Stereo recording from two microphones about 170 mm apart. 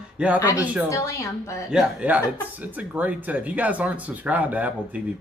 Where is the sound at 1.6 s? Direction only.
5° right (ahead or behind).